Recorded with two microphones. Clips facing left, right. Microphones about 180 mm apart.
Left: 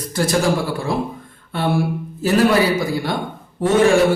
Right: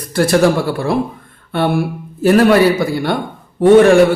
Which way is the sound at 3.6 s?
60° right (ahead or behind).